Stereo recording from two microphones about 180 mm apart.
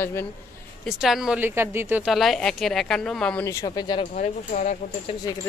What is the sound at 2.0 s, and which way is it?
Speech, centre (ahead or behind).